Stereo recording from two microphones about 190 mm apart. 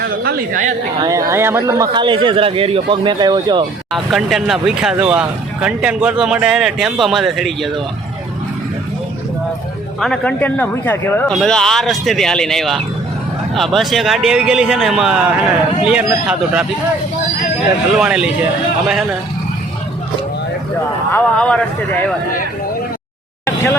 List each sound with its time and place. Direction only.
0.3 s a man's voice: 45° right (ahead or behind)
1.0 s speech: 15° right (ahead or behind)
3.9 s speech: centre (ahead or behind)
10.0 s speech: 5° left (ahead or behind)
18.0 s speech: 5° right (ahead or behind)
21.1 s speech: 5° left (ahead or behind)